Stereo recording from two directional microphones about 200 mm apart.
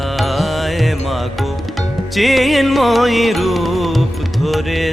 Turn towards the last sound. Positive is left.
turn(degrees=0)  # may be behind; listen again after turning